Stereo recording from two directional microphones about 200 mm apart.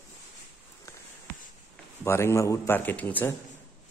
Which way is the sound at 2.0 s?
10° left (ahead or behind).